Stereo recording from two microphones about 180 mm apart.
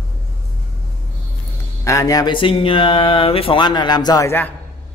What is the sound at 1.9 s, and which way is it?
Speech, 20° left (ahead or behind).